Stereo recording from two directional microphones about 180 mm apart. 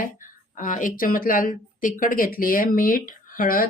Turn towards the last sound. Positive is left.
turn(degrees=50)  # may be behind; listen again after turning